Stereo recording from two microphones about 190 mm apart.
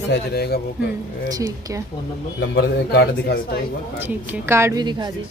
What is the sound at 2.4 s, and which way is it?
A man's voice, 65° left (ahead or behind).